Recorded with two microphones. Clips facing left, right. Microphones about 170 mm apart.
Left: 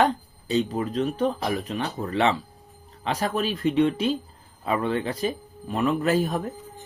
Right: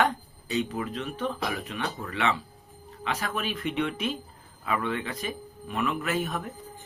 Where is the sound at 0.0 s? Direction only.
30° left (ahead or behind).